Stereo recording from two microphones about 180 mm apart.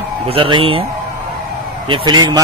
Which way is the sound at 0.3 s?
30° right (ahead or behind).